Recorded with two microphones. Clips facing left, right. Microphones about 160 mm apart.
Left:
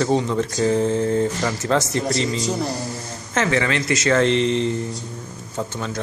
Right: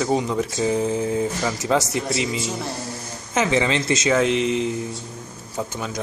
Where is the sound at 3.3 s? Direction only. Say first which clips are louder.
Even; 20° right (ahead or behind).